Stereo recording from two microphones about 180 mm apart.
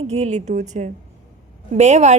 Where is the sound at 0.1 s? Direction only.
40° right (ahead or behind).